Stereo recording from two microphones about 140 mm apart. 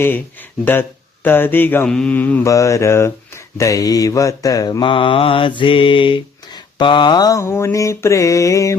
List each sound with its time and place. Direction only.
0.6 s speech: 15° left (ahead or behind)
2.5 s mantra: 20° left (ahead or behind)